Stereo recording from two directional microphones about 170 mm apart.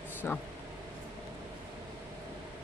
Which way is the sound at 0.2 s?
10° left (ahead or behind).